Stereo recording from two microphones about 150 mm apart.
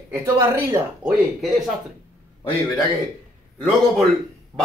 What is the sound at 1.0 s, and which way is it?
Speech, centre (ahead or behind).